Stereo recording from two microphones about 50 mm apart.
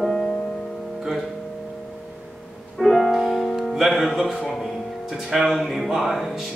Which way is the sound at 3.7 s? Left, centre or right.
Centre.